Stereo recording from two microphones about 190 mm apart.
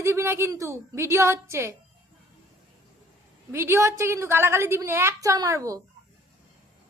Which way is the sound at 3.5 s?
15° right (ahead or behind).